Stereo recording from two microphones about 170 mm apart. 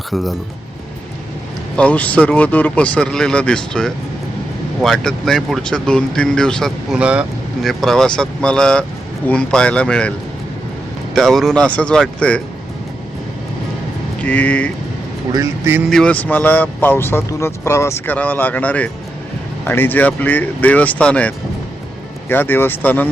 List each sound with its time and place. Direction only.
0.1 s speech: centre (ahead or behind)
1.7 s speech: 5° left (ahead or behind)
14.3 s speech: 10° left (ahead or behind)
15.3 s speech: 20° right (ahead or behind)
15.9 s speech: 5° left (ahead or behind)